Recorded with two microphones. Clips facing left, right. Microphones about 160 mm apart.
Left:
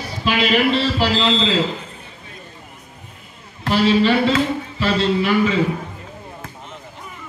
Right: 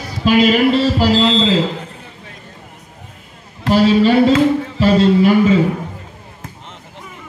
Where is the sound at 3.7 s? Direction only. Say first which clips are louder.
Right 4 dB; 45° right (ahead or behind).